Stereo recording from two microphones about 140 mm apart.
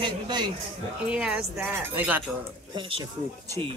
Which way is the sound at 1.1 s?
5° right (ahead or behind).